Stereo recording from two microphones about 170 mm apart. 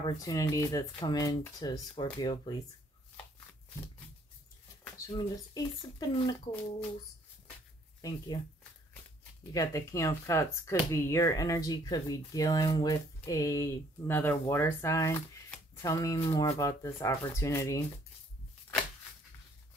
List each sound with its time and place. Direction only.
0.0 s speech: 20° left (ahead or behind)
4.9 s speech: 20° left (ahead or behind)
8.3 s speech: 25° left (ahead or behind)